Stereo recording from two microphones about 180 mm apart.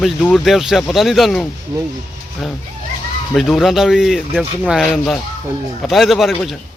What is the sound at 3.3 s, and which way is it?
Speech, centre (ahead or behind).